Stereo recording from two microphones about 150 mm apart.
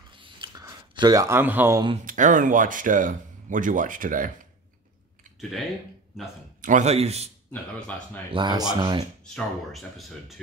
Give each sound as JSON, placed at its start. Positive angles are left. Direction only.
{"t": 0.2, "sound": "a sound", "side_deg": -30}
{"t": 2.0, "sound": "speech", "side_deg": -60}
{"t": 6.6, "sound": "a man's voice", "side_deg": -55}
{"t": 8.3, "sound": "speech", "side_deg": -30}
{"t": 9.2, "sound": "speech", "side_deg": 0}